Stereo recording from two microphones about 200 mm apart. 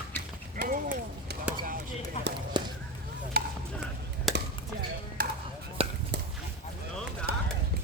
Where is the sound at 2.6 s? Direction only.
25° right (ahead or behind).